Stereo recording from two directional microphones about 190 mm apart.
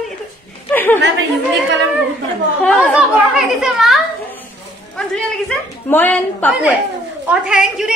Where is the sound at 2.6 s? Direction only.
5° left (ahead or behind).